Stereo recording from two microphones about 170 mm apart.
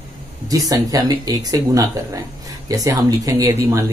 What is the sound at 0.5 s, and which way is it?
Speech, 20° right (ahead or behind).